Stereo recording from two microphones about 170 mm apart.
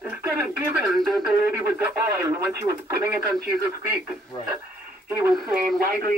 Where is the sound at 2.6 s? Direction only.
20° right (ahead or behind).